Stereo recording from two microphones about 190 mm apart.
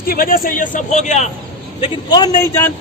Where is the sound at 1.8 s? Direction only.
20° left (ahead or behind).